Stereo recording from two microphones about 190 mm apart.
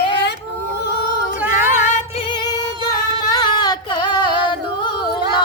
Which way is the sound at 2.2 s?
25° left (ahead or behind).